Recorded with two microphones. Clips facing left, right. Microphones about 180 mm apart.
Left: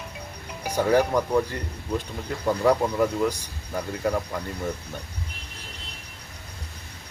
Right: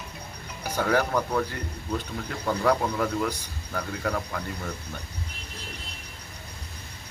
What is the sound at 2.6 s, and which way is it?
Speech, 10° left (ahead or behind).